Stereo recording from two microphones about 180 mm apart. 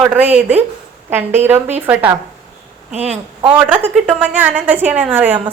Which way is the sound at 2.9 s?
35° right (ahead or behind).